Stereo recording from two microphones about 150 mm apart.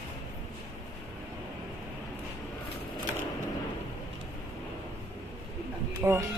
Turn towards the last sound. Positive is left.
turn(degrees=-20)  # may be behind; listen again after turning